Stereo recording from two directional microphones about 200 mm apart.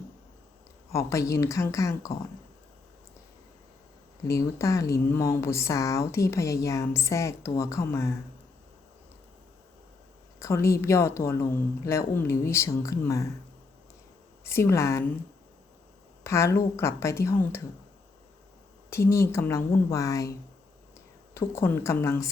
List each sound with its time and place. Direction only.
0.9 s speech: 15° left (ahead or behind)
4.3 s speech: 15° left (ahead or behind)
10.4 s speech: 15° left (ahead or behind)
14.4 s speech: 15° left (ahead or behind)
16.2 s speech: 15° left (ahead or behind)
18.9 s speech: 15° left (ahead or behind)
21.3 s speech: 10° left (ahead or behind)